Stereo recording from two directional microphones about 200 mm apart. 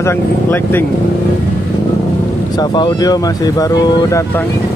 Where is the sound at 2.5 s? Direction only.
20° left (ahead or behind).